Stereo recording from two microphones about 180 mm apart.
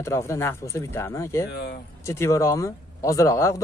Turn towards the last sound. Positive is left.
turn(degrees=15)  # may be behind; listen again after turning